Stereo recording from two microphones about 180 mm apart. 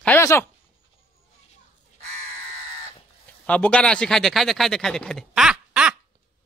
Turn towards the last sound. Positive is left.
turn(degrees=-5)  # may be behind; listen again after turning